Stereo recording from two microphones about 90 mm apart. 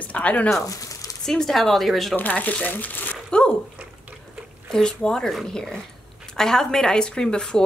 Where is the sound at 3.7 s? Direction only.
15° right (ahead or behind).